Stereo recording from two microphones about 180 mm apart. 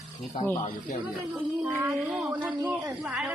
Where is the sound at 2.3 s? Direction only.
10° right (ahead or behind).